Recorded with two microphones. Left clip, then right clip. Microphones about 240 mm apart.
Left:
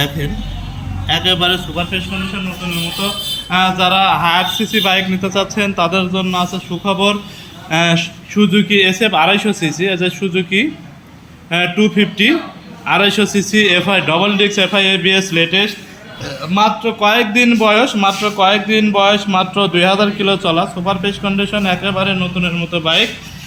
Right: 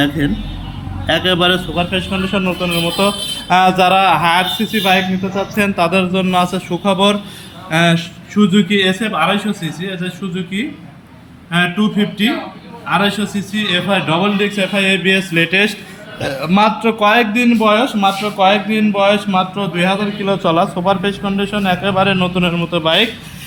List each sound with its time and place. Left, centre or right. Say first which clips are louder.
1.0 s a man's voice: even; centre
3.5 s a man's voice: right 3 dB; centre
16.2 s a man's voice: even; centre
20.2 s a man's voice: even; centre